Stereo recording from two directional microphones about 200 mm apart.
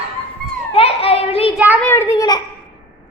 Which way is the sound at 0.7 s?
30° left (ahead or behind).